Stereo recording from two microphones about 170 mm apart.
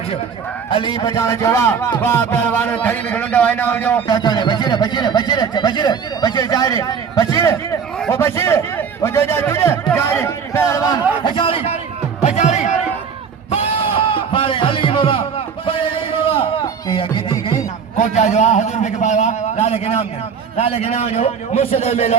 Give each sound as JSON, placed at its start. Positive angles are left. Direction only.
{"t": 0.7, "sound": "music", "side_deg": 25}
{"t": 4.1, "sound": "a man's voice", "side_deg": 25}
{"t": 8.1, "sound": "music", "side_deg": 15}
{"t": 11.2, "sound": "a man's voice", "side_deg": 30}
{"t": 13.5, "sound": "music", "side_deg": 35}
{"t": 17.9, "sound": "a man's voice", "side_deg": 40}